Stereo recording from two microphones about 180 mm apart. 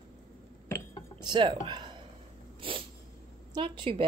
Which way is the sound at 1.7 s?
25° right (ahead or behind).